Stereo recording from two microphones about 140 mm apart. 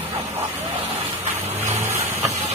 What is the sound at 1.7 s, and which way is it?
Vehicle, 50° right (ahead or behind).